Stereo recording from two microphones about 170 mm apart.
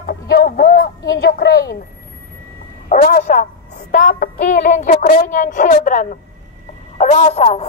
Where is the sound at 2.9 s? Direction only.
60° left (ahead or behind).